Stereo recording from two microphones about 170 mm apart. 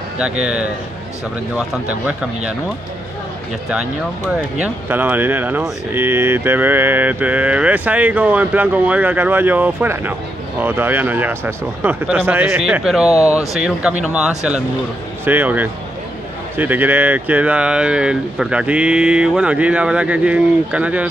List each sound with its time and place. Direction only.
0.2 s speech: 5° right (ahead or behind)
4.3 s speech: 5° right (ahead or behind)
13.1 s speech: 20° left (ahead or behind)
13.5 s speech: 5° right (ahead or behind)